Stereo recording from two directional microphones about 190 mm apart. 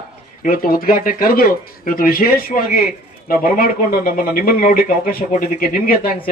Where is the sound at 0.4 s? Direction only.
50° left (ahead or behind).